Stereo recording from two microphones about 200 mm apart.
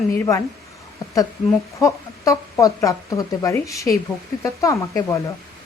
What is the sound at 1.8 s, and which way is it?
A woman's voice, 15° left (ahead or behind).